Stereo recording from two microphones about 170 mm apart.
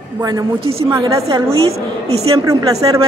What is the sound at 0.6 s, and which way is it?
Speech, 35° right (ahead or behind).